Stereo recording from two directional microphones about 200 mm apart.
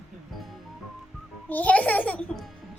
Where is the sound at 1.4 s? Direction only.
10° left (ahead or behind).